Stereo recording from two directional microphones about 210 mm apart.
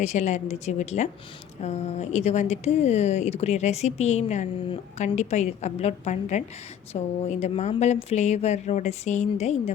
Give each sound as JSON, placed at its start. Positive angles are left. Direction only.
{"t": 0.0, "sound": "speech", "side_deg": 35}